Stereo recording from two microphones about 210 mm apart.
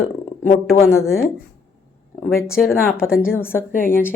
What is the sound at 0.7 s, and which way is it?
Speech, 10° left (ahead or behind).